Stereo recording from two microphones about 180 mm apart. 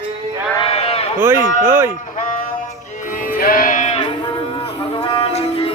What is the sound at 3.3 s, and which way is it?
Music, 55° left (ahead or behind).